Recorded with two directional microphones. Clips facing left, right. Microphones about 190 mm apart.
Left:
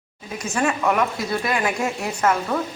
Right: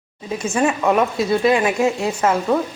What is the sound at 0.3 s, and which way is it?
Speech, 25° right (ahead or behind).